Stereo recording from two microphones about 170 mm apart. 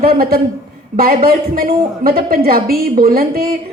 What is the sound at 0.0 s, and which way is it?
A woman's voice, 60° right (ahead or behind).